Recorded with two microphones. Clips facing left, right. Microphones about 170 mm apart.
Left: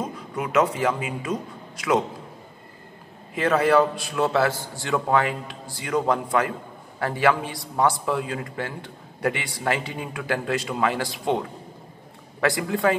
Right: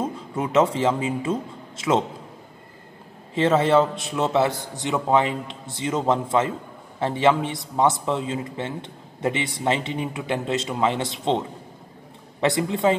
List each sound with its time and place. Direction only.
0.0 s a man's voice: 25° right (ahead or behind)
3.3 s a man's voice: 25° right (ahead or behind)